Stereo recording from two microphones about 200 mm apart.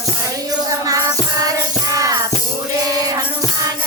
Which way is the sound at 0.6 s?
15° right (ahead or behind).